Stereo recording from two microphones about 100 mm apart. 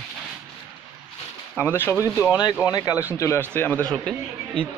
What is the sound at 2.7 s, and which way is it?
Speech, 35° left (ahead or behind).